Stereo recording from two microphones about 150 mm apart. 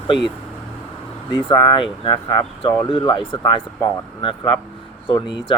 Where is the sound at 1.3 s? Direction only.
30° left (ahead or behind).